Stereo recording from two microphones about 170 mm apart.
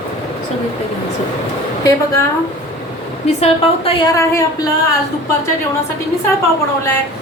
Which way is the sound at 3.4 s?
35° left (ahead or behind).